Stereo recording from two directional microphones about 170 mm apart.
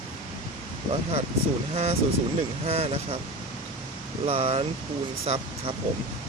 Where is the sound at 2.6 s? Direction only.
35° right (ahead or behind).